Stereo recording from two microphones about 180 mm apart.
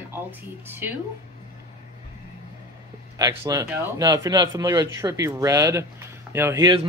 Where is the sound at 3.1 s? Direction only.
20° right (ahead or behind).